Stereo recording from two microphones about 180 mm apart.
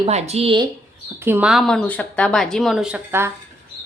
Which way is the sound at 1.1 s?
10° right (ahead or behind).